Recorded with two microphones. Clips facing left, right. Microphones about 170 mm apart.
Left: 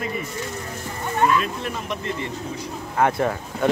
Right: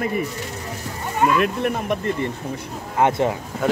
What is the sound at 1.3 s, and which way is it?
Speech, 60° right (ahead or behind).